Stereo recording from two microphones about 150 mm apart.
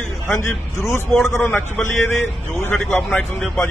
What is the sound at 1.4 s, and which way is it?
A man's voice, 15° left (ahead or behind).